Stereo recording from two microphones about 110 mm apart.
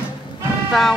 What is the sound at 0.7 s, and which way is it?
Speech, centre (ahead or behind).